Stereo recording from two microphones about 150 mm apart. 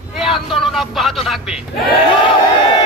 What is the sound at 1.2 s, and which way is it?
Speech, centre (ahead or behind).